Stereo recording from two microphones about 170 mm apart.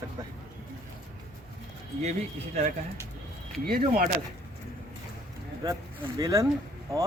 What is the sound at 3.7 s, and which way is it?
Speech, 60° right (ahead or behind).